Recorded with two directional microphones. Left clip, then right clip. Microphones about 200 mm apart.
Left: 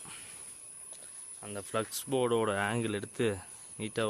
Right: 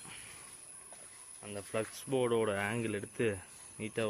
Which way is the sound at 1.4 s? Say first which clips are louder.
Left 3 dB; 20° left (ahead or behind).